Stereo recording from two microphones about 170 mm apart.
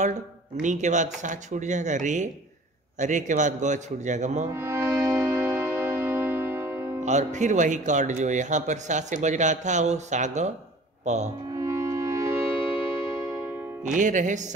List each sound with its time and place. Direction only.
0.6 s speech: 45° right (ahead or behind)
4.5 s music: 15° right (ahead or behind)
7.1 s speech: 45° right (ahead or behind)
11.5 s music: 15° right (ahead or behind)
13.9 s speech: 50° right (ahead or behind)